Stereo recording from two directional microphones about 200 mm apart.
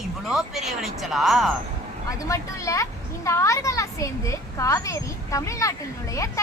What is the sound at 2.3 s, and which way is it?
A child's voice, 15° left (ahead or behind).